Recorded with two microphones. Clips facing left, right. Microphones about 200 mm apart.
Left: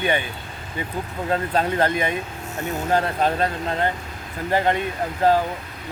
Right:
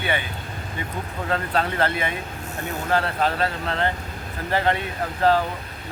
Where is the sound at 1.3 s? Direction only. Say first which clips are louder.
Left 3 dB; 15° left (ahead or behind).